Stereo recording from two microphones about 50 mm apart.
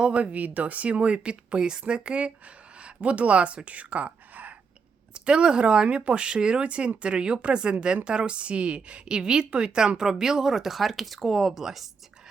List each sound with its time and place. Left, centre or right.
0.2 s speech: right
5.1 s a woman's voice: centre